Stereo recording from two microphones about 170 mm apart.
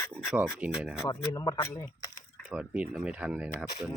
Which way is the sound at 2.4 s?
5° right (ahead or behind).